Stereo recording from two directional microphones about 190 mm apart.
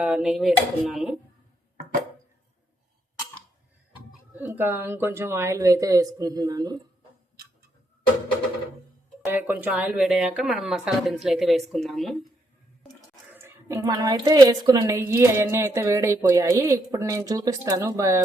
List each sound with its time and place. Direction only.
0.0 s speech: 5° right (ahead or behind)
4.4 s a woman's voice: 10° right (ahead or behind)
9.2 s speech: 10° right (ahead or behind)
13.3 s a woman's voice: 15° right (ahead or behind)